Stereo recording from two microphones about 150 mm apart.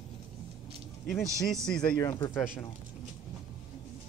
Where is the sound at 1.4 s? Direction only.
5° left (ahead or behind).